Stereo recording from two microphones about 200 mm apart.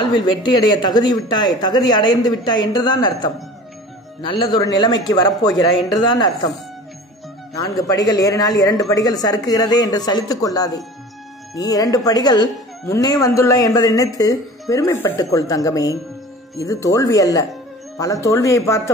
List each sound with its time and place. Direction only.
0.0 s a man's voice: 20° left (ahead or behind)